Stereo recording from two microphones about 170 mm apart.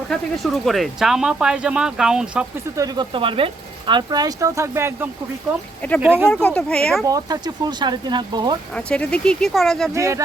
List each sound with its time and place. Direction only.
0.1 s speech: centre (ahead or behind)
2.7 s speech: 20° right (ahead or behind)
6.2 s speech: 5° left (ahead or behind)
7.0 s speech: 20° right (ahead or behind)
8.7 s speech: 5° left (ahead or behind)
9.9 s speech: 20° right (ahead or behind)